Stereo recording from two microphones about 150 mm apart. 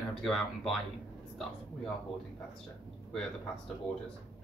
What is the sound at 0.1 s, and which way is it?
Speech, centre (ahead or behind).